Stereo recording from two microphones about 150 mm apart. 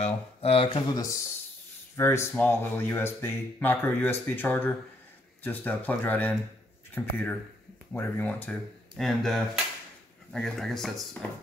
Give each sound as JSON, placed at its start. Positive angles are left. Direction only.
{"t": 0.0, "sound": "speech", "side_deg": 40}
{"t": 0.7, "sound": "speech", "side_deg": 25}